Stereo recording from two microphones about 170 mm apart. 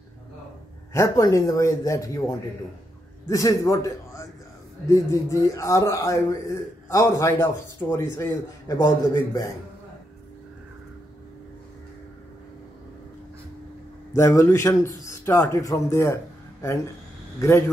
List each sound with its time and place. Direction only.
0.9 s a man's voice: 20° left (ahead or behind)
14.1 s a man's voice: 15° left (ahead or behind)